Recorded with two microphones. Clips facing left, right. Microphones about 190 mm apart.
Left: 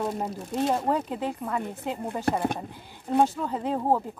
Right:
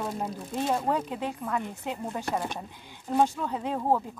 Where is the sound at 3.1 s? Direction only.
10° left (ahead or behind).